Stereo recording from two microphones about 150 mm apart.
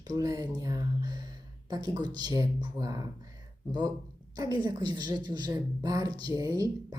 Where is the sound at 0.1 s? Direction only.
25° right (ahead or behind).